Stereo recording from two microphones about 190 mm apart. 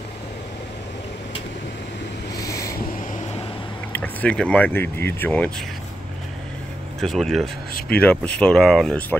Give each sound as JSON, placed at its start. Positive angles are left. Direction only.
{"t": 2.3, "sound": "a sound", "side_deg": 15}
{"t": 3.9, "sound": "speech", "side_deg": 10}
{"t": 7.0, "sound": "speech", "side_deg": 0}